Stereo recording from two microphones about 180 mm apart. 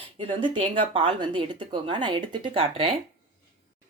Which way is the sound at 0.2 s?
30° right (ahead or behind).